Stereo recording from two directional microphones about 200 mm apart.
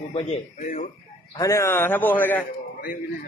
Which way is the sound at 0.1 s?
35° left (ahead or behind).